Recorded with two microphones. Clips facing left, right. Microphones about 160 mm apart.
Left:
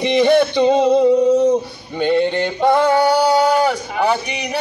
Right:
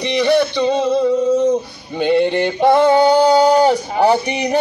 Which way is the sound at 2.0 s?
10° right (ahead or behind).